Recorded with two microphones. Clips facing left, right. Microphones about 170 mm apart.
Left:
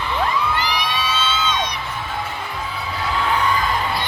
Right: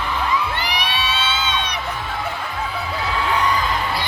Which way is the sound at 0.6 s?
65° right (ahead or behind).